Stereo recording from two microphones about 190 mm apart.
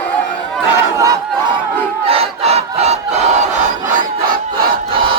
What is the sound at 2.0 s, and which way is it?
Battle cry, 30° right (ahead or behind).